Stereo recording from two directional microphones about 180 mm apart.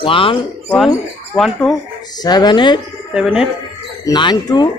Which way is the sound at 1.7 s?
20° left (ahead or behind).